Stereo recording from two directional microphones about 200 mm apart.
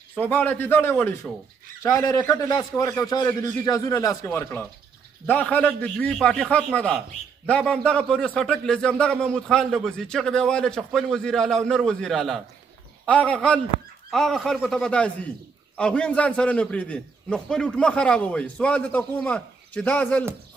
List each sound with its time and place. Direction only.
0.1 s a man's voice: 10° left (ahead or behind)